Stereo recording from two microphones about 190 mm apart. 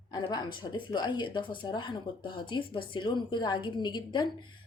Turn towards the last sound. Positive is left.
turn(degrees=25)  # may be behind; listen again after turning